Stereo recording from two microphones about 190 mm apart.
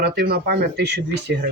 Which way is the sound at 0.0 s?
55° right (ahead or behind).